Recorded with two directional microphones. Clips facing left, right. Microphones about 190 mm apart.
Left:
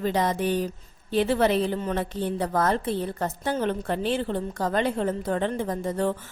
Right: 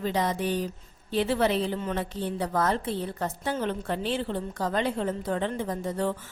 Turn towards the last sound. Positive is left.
turn(degrees=50)  # may be behind; listen again after turning